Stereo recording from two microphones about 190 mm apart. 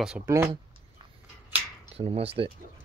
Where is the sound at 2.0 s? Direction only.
30° right (ahead or behind).